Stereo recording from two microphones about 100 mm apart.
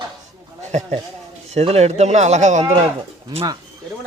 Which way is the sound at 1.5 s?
90° right.